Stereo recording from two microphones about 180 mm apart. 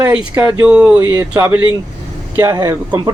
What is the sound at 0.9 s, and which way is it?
Speech, 20° right (ahead or behind).